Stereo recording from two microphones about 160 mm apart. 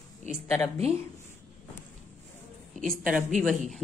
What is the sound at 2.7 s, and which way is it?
A woman's voice, centre (ahead or behind).